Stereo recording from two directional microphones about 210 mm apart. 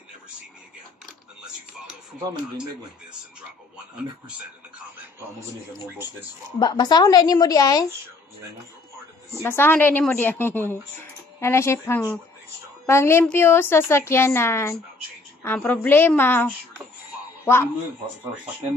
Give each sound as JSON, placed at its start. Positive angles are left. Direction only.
{"t": 6.6, "sound": "a woman's voice", "side_deg": 20}
{"t": 9.4, "sound": "a woman's voice", "side_deg": 10}